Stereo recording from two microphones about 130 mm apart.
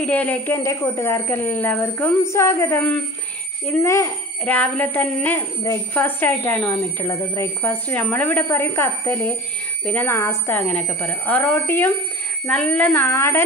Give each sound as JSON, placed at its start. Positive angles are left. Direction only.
{"t": 0.0, "sound": "a woman's voice", "side_deg": 10}